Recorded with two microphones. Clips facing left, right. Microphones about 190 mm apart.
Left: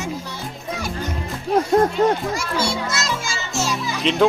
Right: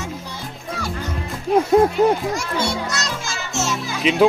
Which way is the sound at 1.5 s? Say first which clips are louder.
Right 2 dB; 5° right (ahead or behind).